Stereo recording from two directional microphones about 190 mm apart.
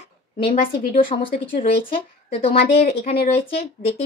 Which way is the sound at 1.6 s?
50° left (ahead or behind).